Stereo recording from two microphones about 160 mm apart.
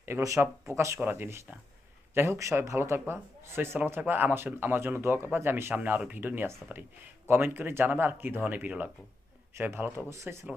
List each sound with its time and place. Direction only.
0.0 s speech: 20° right (ahead or behind)